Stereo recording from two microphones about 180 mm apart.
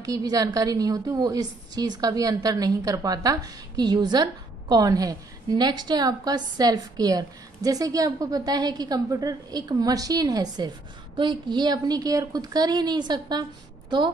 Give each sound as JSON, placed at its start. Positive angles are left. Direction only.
{"t": 0.0, "sound": "a woman's voice", "side_deg": -20}